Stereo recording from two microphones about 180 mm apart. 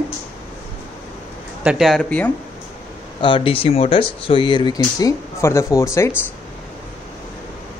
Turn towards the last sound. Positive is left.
turn(degrees=15)  # may be behind; listen again after turning